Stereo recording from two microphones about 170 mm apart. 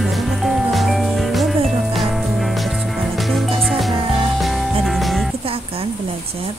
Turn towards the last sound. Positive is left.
turn(degrees=0)  # may be behind; listen again after turning